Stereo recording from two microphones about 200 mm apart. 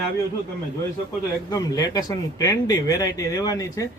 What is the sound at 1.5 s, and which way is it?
Speech, 20° left (ahead or behind).